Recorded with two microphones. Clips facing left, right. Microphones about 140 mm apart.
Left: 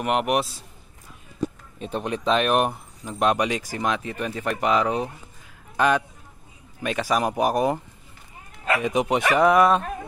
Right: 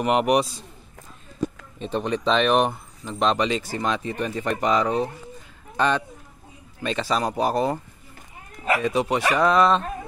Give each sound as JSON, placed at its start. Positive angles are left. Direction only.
{"t": 0.0, "sound": "speech", "side_deg": 0}
{"t": 1.8, "sound": "speech", "side_deg": 5}
{"t": 8.8, "sound": "speech", "side_deg": 20}